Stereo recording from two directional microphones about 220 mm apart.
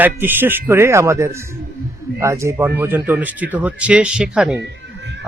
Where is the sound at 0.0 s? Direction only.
10° right (ahead or behind).